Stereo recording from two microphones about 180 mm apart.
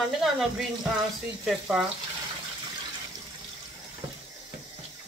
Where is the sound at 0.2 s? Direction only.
Centre (ahead or behind).